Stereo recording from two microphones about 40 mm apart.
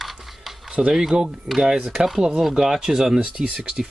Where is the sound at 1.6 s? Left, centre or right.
Centre.